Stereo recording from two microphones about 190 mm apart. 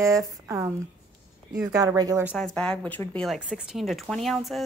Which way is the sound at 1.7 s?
20° right (ahead or behind).